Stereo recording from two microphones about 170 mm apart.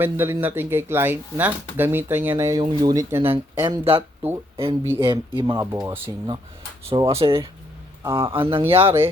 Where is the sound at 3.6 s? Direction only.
30° right (ahead or behind).